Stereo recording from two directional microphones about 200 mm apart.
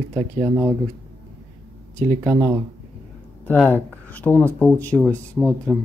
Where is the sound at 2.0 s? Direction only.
10° right (ahead or behind).